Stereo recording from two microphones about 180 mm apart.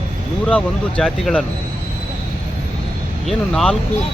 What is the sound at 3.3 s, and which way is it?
Speech, centre (ahead or behind).